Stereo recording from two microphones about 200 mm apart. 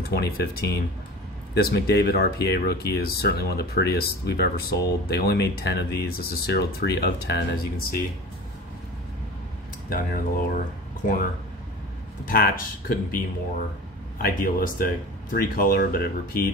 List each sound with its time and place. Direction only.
0.0 s speech: 55° left (ahead or behind)
9.8 s speech: 45° left (ahead or behind)
12.3 s speech: 45° left (ahead or behind)